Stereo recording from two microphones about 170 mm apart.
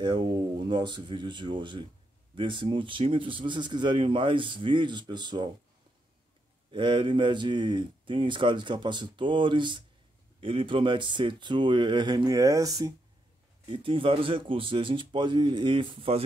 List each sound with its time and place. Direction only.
0.0 s speech: 25° right (ahead or behind)
6.7 s speech: 30° right (ahead or behind)
13.7 s speech: 30° right (ahead or behind)